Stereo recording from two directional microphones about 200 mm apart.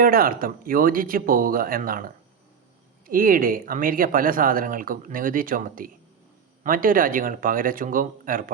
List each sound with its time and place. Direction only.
0.0 s speech: 45° right (ahead or behind)